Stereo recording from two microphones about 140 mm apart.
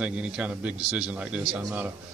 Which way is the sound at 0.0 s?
10° right (ahead or behind).